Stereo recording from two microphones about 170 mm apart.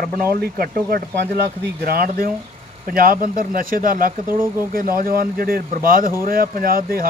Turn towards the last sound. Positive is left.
turn(degrees=-60)  # may be behind; listen again after turning